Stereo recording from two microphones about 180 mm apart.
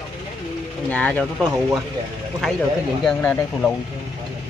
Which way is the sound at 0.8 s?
10° left (ahead or behind).